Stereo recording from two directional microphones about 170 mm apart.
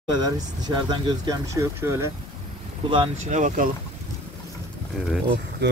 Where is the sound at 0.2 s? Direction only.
25° right (ahead or behind).